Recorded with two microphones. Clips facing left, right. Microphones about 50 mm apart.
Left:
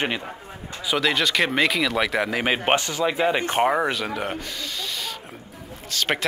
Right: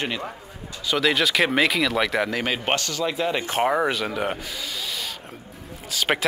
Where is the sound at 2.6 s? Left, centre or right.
Centre.